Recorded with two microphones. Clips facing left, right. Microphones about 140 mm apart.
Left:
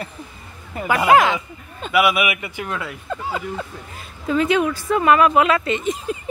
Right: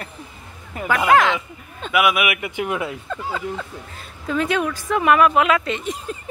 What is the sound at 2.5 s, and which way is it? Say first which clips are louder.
Speech: right 4 dB; 15° right (ahead or behind).